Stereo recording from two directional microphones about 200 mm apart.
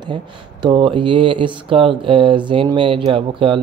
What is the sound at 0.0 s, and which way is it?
Speech, 20° right (ahead or behind).